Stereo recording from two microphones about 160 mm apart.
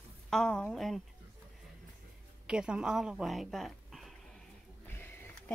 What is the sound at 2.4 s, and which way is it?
Speech, 5° right (ahead or behind).